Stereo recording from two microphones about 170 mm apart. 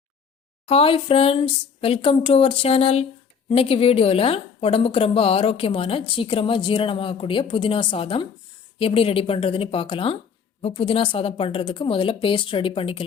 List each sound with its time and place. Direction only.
0.6 s a woman's voice: 35° left (ahead or behind)